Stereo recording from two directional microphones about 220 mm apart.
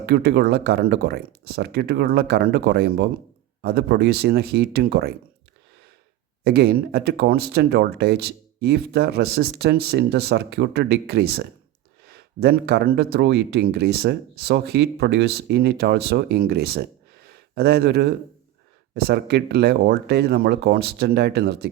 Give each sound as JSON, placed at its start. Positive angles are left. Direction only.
{"t": 0.0, "sound": "speech", "side_deg": -45}
{"t": 6.4, "sound": "speech", "side_deg": -45}